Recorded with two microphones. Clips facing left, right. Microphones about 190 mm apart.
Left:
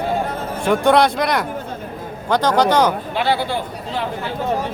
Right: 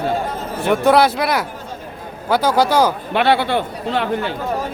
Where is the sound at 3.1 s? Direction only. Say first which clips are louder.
Right 4 dB; 65° right (ahead or behind).